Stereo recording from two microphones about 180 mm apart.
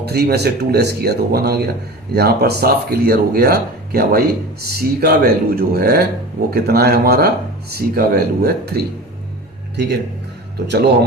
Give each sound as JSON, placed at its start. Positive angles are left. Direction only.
{"t": 0.0, "sound": "speech", "side_deg": -60}
{"t": 10.7, "sound": "speech", "side_deg": -70}